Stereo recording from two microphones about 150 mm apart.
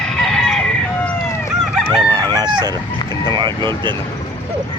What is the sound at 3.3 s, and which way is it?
Speech, 30° right (ahead or behind).